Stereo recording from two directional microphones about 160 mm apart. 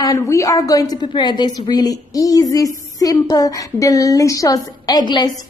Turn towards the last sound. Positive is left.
turn(degrees=25)  # may be behind; listen again after turning